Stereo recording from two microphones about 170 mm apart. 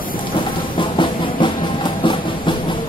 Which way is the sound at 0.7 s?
30° left (ahead or behind).